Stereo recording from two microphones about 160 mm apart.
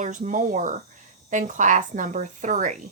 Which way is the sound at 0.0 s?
50° right (ahead or behind).